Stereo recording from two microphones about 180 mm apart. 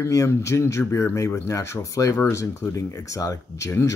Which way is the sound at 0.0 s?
15° left (ahead or behind).